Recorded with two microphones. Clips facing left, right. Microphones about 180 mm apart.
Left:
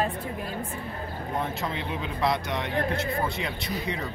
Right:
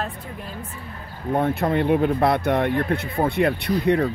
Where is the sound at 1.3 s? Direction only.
55° right (ahead or behind).